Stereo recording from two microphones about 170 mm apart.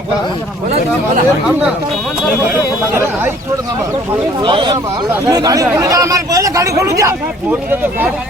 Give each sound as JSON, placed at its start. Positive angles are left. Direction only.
{"t": 2.5, "sound": "speech", "side_deg": -10}
{"t": 4.4, "sound": "speech", "side_deg": -30}